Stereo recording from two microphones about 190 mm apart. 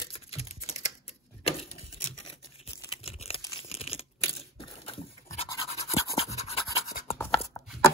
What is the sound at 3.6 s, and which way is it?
Crumpling, 30° left (ahead or behind).